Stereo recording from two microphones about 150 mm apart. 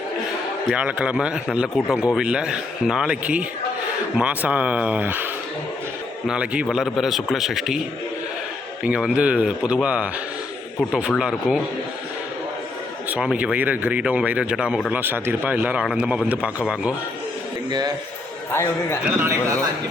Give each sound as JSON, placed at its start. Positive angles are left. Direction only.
{"t": 0.7, "sound": "speech", "side_deg": -10}
{"t": 8.8, "sound": "speech", "side_deg": -5}
{"t": 13.1, "sound": "speech", "side_deg": -10}
{"t": 17.7, "sound": "a man's voice", "side_deg": -30}
{"t": 19.0, "sound": "speech", "side_deg": -15}